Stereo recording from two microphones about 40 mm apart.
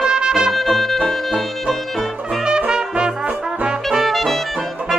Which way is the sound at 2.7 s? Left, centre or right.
Centre.